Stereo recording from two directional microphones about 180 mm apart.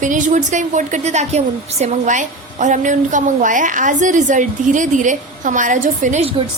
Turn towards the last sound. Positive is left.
turn(degrees=-40)  # may be behind; listen again after turning